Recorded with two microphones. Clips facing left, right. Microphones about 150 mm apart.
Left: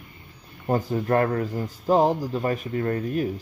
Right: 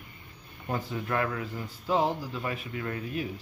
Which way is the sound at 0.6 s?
40° left (ahead or behind).